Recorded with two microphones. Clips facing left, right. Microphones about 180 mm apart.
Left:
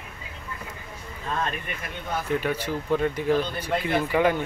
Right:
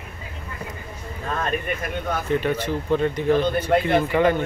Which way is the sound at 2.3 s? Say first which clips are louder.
Right 3 dB; 10° left (ahead or behind).